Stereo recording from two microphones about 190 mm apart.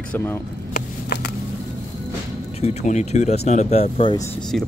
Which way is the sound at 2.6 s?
40° left (ahead or behind).